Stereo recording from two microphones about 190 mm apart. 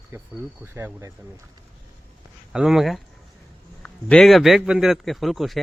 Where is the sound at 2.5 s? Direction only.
5° right (ahead or behind).